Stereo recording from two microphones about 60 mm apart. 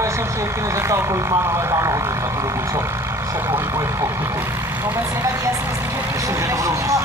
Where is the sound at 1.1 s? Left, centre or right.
Right.